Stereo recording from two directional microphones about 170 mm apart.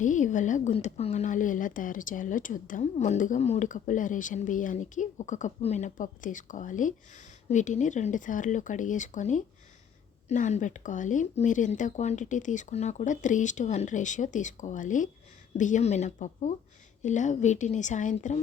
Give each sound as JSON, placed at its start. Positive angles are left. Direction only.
{"t": 0.0, "sound": "speech", "side_deg": 45}